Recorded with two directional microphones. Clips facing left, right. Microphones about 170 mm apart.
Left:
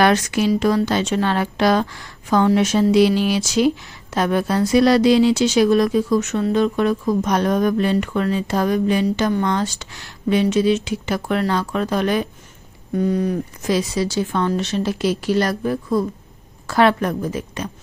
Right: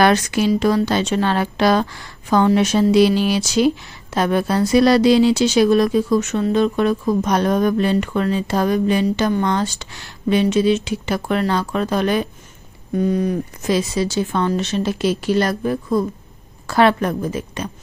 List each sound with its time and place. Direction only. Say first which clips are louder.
0.0 s speech: right 1 dB; 30° right (ahead or behind)